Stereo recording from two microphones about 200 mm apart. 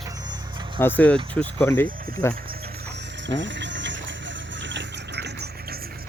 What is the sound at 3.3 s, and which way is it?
Boiling, 65° right (ahead or behind).